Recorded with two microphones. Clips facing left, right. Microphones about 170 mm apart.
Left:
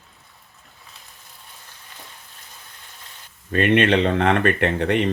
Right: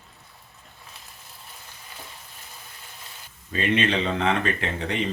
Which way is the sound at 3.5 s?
60° left (ahead or behind).